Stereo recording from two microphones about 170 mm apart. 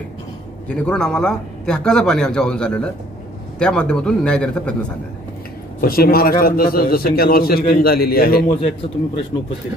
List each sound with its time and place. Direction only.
0.7 s a man's voice: 5° left (ahead or behind)
5.8 s a man's voice: 60° left (ahead or behind)
9.3 s speech: 20° left (ahead or behind)